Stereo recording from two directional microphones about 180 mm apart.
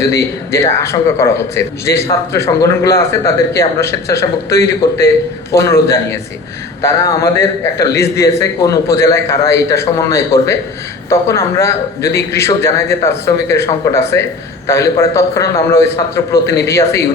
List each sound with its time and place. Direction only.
0.1 s a man's voice: 15° left (ahead or behind)